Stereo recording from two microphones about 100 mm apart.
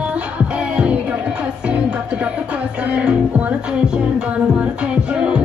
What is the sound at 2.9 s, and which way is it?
Music, 15° right (ahead or behind).